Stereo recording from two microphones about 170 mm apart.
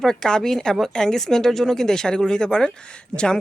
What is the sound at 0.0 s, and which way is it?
Speech, 5° left (ahead or behind).